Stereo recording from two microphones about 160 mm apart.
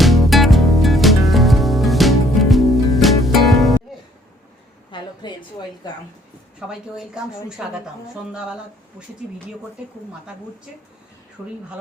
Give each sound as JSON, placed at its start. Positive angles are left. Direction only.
{"t": 0.0, "sound": "music", "side_deg": 0}
{"t": 4.9, "sound": "a sound", "side_deg": 30}
{"t": 6.6, "sound": "a woman's voice", "side_deg": -5}